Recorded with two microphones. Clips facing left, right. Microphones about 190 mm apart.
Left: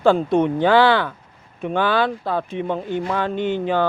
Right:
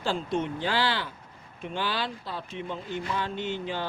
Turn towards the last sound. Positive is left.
turn(degrees=55)  # may be behind; listen again after turning